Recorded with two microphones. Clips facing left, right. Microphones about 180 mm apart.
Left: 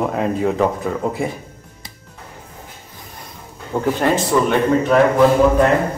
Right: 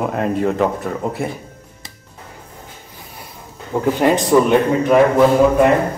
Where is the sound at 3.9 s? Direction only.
15° right (ahead or behind).